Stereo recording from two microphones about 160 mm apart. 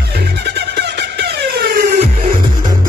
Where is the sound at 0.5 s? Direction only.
90° right.